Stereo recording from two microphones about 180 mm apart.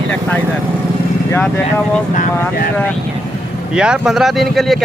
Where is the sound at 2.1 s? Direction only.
55° left (ahead or behind).